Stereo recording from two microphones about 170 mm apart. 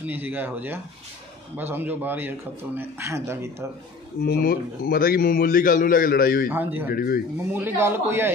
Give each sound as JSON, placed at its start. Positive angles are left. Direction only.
{"t": 0.0, "sound": "a man's voice", "side_deg": -10}
{"t": 4.2, "sound": "a man's voice", "side_deg": 65}
{"t": 6.5, "sound": "a man's voice", "side_deg": -10}
{"t": 6.9, "sound": "a man's voice", "side_deg": 60}
{"t": 7.5, "sound": "a man's voice", "side_deg": -10}